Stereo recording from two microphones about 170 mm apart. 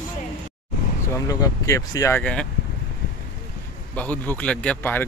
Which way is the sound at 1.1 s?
20° left (ahead or behind).